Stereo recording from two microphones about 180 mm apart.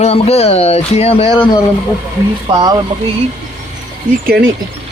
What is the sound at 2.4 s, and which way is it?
Speech, 20° right (ahead or behind).